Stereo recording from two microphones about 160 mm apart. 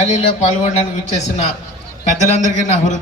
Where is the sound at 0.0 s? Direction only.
45° left (ahead or behind).